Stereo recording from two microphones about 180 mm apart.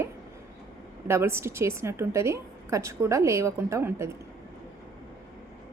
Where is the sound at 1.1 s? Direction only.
15° right (ahead or behind).